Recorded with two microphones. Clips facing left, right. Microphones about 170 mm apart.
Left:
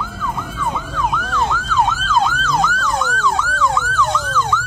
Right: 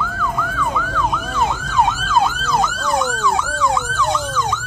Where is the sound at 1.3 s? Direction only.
20° right (ahead or behind).